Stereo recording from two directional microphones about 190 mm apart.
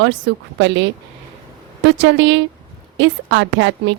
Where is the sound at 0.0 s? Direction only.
70° right (ahead or behind).